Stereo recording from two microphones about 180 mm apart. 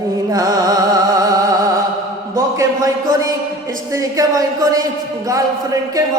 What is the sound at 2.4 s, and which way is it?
A man's voice, 20° right (ahead or behind).